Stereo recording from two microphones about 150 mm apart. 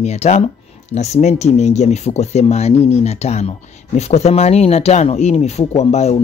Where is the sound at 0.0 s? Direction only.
50° left (ahead or behind).